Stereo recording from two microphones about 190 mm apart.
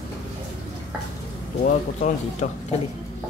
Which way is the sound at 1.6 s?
40° left (ahead or behind).